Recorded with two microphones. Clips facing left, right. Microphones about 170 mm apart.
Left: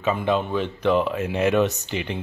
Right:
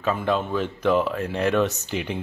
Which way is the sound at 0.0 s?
Centre (ahead or behind).